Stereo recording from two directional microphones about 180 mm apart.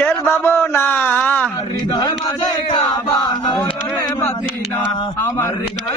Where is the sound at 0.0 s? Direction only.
10° left (ahead or behind).